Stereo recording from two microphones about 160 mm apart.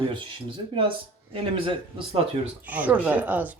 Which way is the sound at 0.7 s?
35° right (ahead or behind).